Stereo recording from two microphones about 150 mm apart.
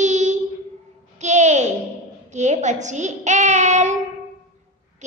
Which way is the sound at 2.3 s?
50° right (ahead or behind).